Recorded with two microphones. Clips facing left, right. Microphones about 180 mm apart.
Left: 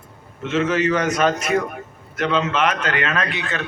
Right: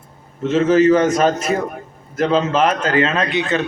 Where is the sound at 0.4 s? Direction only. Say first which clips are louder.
Right 7 dB; 30° right (ahead or behind).